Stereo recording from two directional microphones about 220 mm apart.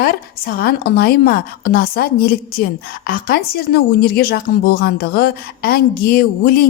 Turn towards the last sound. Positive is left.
turn(degrees=45)  # may be behind; listen again after turning